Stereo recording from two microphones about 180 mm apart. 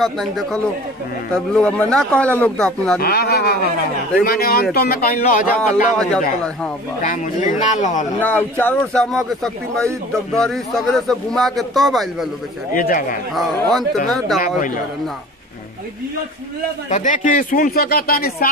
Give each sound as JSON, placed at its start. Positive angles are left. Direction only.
{"t": 0.0, "sound": "a man's voice", "side_deg": 0}
{"t": 3.0, "sound": "speech", "side_deg": 60}
{"t": 5.9, "sound": "a man's voice", "side_deg": 5}
{"t": 7.0, "sound": "speech", "side_deg": 45}
{"t": 8.2, "sound": "a man's voice", "side_deg": 10}
{"t": 12.7, "sound": "speech", "side_deg": 50}
{"t": 13.3, "sound": "a man's voice", "side_deg": 0}
{"t": 16.9, "sound": "speech", "side_deg": 45}